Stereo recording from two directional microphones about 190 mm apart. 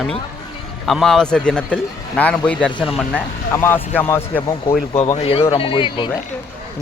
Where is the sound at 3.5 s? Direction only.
10° left (ahead or behind).